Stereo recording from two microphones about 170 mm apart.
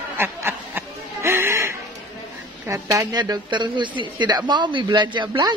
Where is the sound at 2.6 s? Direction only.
20° right (ahead or behind).